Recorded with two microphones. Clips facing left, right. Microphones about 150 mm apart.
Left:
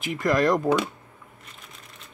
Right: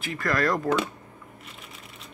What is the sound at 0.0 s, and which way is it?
Speech, 20° left (ahead or behind).